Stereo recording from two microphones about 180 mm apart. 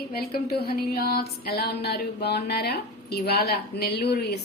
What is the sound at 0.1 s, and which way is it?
A woman's voice, 60° left (ahead or behind).